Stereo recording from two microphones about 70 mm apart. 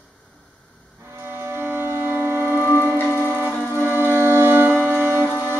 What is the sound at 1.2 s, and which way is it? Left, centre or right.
Music, right.